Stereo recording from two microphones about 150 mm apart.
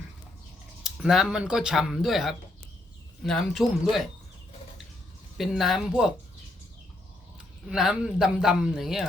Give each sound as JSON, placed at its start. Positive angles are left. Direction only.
{"t": 0.9, "sound": "speech", "side_deg": 0}
{"t": 5.4, "sound": "speech", "side_deg": 0}
{"t": 7.7, "sound": "speech", "side_deg": -5}